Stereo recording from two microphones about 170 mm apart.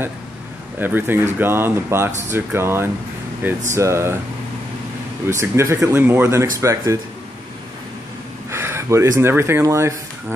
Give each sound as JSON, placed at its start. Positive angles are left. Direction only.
{"t": 0.7, "sound": "speech", "side_deg": -10}
{"t": 5.4, "sound": "speech", "side_deg": -15}
{"t": 8.5, "sound": "a sound", "side_deg": -15}
{"t": 9.2, "sound": "speech", "side_deg": -15}